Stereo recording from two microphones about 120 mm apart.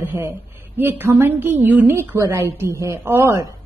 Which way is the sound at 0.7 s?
20° right (ahead or behind).